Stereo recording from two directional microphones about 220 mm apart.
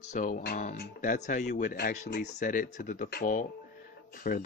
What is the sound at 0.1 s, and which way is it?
Speech, 35° left (ahead or behind).